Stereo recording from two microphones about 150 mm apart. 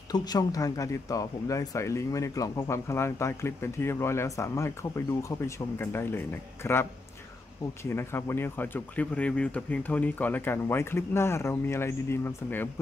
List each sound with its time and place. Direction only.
0.1 s speech: 25° left (ahead or behind)